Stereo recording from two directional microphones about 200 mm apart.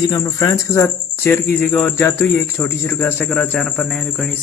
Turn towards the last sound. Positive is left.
turn(degrees=5)  # may be behind; listen again after turning